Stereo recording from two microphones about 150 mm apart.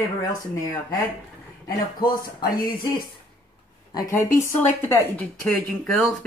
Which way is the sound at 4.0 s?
20° left (ahead or behind).